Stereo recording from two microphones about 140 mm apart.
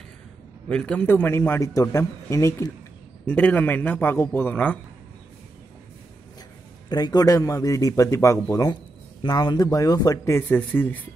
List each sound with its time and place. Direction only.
0.7 s a man's voice: 10° left (ahead or behind)
3.3 s a man's voice: 10° left (ahead or behind)
6.9 s a man's voice: 30° left (ahead or behind); by 11.0 s 15° left (ahead or behind)